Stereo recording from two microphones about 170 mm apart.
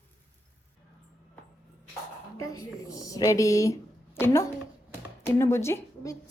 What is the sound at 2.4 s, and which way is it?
A woman's voice, 20° left (ahead or behind).